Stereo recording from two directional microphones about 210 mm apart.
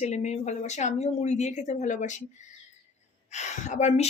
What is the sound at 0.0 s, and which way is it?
A woman's voice, 35° left (ahead or behind).